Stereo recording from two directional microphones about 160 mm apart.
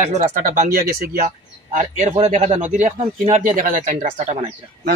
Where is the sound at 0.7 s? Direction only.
65° right (ahead or behind); by 4.4 s 50° right (ahead or behind).